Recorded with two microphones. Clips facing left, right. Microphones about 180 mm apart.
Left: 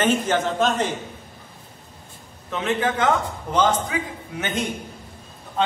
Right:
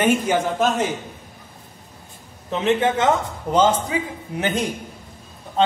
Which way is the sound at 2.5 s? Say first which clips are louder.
Right 4 dB; 25° right (ahead or behind).